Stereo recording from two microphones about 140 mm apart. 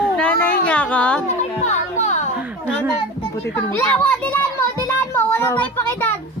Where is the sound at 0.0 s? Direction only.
10° left (ahead or behind).